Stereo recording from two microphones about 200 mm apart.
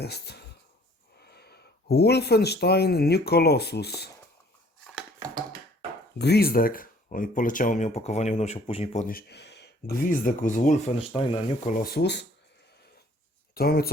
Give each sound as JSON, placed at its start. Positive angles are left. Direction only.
{"t": 0.0, "sound": "speech", "side_deg": 55}
{"t": 6.1, "sound": "speech", "side_deg": 55}
{"t": 9.0, "sound": "speech", "side_deg": 50}
{"t": 13.5, "sound": "speech", "side_deg": 50}